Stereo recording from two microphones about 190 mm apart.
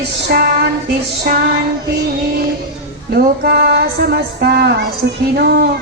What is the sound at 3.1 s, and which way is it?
Speech, 60° right (ahead or behind).